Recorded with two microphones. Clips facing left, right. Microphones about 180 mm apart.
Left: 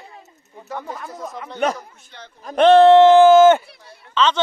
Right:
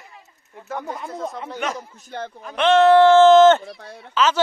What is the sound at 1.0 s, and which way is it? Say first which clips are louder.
Speech: right 3 dB; 25° right (ahead or behind).